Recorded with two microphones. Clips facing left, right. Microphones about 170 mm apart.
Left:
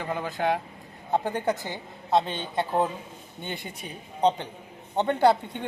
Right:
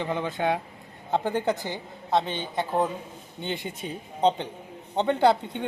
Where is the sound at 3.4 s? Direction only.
20° right (ahead or behind).